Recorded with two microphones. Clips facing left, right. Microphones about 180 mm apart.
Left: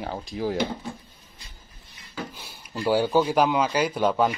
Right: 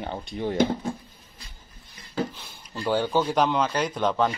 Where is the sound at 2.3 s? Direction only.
10° left (ahead or behind).